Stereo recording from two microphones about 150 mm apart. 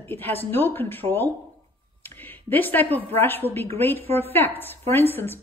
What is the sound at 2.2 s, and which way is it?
Speech, 10° left (ahead or behind).